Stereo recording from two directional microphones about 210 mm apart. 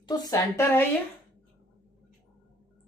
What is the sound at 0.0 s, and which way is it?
Speech, 20° left (ahead or behind).